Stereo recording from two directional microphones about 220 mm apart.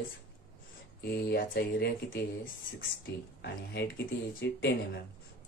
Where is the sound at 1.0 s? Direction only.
45° left (ahead or behind).